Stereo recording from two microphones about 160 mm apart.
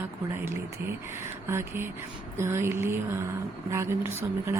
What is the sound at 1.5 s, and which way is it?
Speech, 15° right (ahead or behind).